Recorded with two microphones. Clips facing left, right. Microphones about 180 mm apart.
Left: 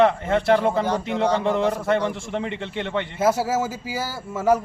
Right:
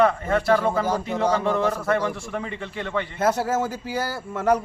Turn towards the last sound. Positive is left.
turn(degrees=5)  # may be behind; listen again after turning